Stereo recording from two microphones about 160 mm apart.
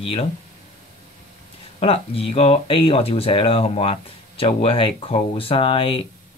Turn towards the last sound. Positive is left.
turn(degrees=35)  # may be behind; listen again after turning